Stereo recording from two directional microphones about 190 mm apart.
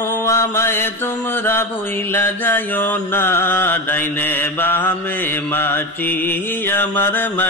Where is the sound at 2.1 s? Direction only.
10° left (ahead or behind).